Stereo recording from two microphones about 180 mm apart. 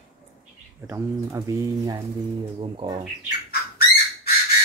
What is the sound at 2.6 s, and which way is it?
Speech, 30° right (ahead or behind).